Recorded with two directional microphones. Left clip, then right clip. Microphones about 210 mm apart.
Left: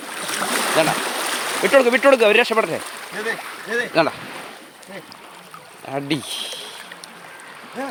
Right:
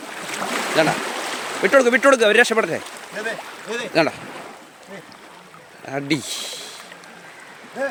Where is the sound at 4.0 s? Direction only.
15° right (ahead or behind).